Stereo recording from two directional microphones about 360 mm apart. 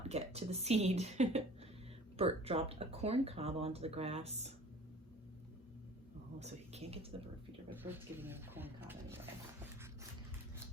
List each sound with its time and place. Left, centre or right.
0.1 s speech: centre
6.4 s speech: centre
7.8 s speech: centre